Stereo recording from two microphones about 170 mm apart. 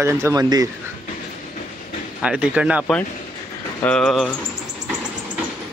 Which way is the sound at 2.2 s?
5° right (ahead or behind).